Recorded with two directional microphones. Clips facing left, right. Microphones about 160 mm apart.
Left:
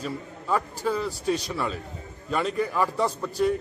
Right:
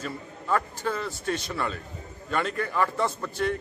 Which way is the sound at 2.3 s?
5° left (ahead or behind).